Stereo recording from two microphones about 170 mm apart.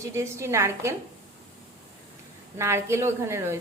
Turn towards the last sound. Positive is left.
turn(degrees=-15)  # may be behind; listen again after turning